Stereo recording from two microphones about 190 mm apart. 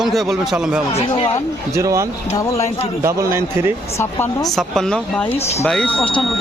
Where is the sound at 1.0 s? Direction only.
30° left (ahead or behind).